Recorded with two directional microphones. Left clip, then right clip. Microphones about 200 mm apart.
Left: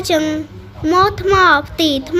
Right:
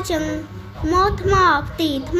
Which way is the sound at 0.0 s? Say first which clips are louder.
Left 7 dB; 35° left (ahead or behind).